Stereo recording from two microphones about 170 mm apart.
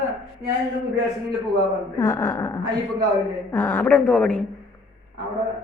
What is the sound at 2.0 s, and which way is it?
Speech, 15° left (ahead or behind).